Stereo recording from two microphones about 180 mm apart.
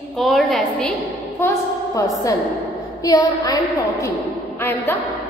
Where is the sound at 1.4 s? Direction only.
15° left (ahead or behind).